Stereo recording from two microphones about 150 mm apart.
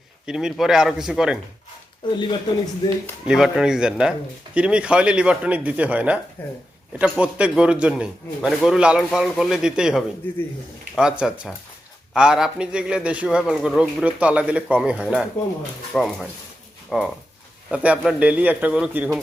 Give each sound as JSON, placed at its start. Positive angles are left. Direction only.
{"t": 0.3, "sound": "a man's voice", "side_deg": -5}
{"t": 2.1, "sound": "speech", "side_deg": 35}
{"t": 3.2, "sound": "a man's voice", "side_deg": 0}
{"t": 6.4, "sound": "speech", "side_deg": 10}
{"t": 7.0, "sound": "a man's voice", "side_deg": -10}
{"t": 10.2, "sound": "speech", "side_deg": 15}
{"t": 10.9, "sound": "a man's voice", "side_deg": -5}